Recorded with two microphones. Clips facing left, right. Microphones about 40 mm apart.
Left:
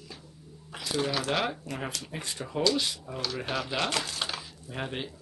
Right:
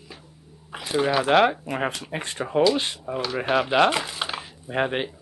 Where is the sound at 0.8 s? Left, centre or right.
Right.